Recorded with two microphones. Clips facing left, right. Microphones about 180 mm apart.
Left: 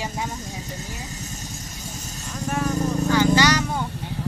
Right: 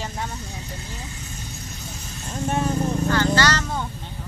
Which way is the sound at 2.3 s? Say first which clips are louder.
Right 2 dB; 25° right (ahead or behind).